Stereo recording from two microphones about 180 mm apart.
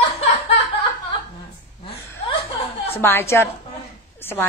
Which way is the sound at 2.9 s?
15° left (ahead or behind).